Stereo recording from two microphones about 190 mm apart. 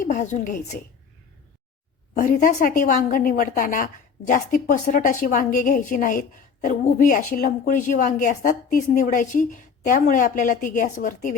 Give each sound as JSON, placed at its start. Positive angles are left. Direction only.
{"t": 0.0, "sound": "a woman's voice", "side_deg": 40}
{"t": 2.1, "sound": "a woman's voice", "side_deg": 45}